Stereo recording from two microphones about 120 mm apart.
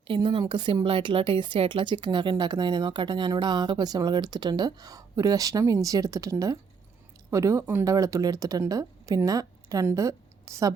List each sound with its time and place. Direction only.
0.1 s a woman's voice: 40° right (ahead or behind)